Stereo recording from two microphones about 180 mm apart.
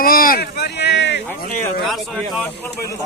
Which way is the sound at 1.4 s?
55° left (ahead or behind).